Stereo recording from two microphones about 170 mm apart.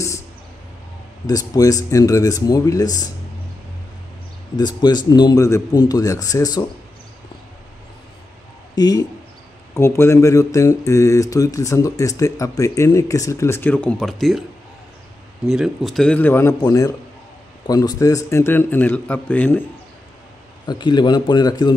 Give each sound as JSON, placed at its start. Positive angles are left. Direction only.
{"t": 1.2, "sound": "speech", "side_deg": 20}
{"t": 4.6, "sound": "speech", "side_deg": 25}
{"t": 8.7, "sound": "speech", "side_deg": 25}
{"t": 15.4, "sound": "a man's voice", "side_deg": -5}
{"t": 20.6, "sound": "speech", "side_deg": 25}